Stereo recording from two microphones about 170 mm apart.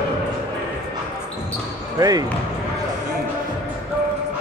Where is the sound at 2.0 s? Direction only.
20° right (ahead or behind).